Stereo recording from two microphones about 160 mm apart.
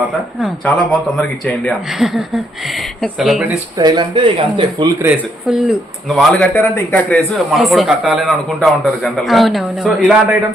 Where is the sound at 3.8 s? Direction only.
25° right (ahead or behind).